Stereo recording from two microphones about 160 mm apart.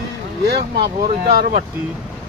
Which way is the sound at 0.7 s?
70° right (ahead or behind).